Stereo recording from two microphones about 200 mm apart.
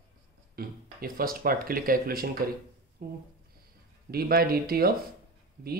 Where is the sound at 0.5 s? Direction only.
45° right (ahead or behind).